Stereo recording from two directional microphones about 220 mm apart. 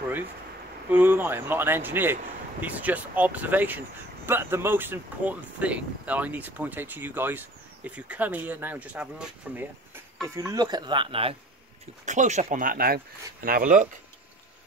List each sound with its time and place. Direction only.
0.8 s speech: 10° right (ahead or behind); by 13.8 s 35° right (ahead or behind)